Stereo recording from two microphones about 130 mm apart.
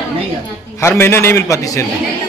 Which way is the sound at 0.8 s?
20° left (ahead or behind).